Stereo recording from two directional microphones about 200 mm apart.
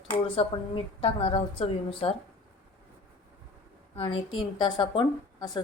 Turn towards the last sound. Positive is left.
turn(degrees=20)  # may be behind; listen again after turning